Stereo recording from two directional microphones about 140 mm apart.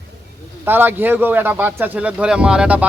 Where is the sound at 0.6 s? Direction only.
15° right (ahead or behind).